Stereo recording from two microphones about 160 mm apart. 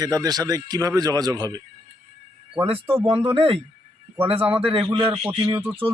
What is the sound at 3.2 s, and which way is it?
Speech, 35° right (ahead or behind).